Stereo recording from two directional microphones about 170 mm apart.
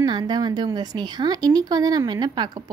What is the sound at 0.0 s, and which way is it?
Speech, 25° right (ahead or behind).